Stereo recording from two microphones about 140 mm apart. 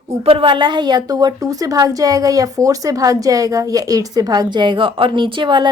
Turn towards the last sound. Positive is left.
turn(degrees=-35)  # may be behind; listen again after turning